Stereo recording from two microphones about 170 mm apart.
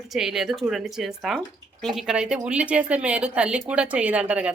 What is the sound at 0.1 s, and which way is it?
Speech, centre (ahead or behind).